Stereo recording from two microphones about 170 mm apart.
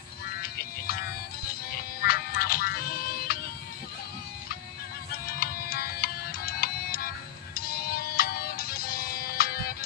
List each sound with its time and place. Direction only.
2.0 s music: 65° left (ahead or behind)
5.4 s music: 65° left (ahead or behind)